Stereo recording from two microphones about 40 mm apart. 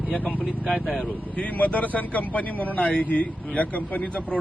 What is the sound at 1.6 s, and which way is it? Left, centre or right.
Speech, left.